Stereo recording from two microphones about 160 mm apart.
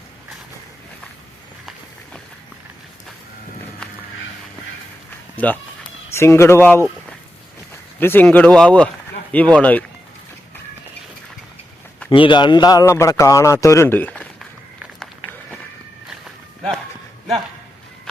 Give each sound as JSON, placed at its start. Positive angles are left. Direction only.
{"t": 5.4, "sound": "speech", "side_deg": 10}
{"t": 7.9, "sound": "speech", "side_deg": 10}
{"t": 12.1, "sound": "a man's voice", "side_deg": 30}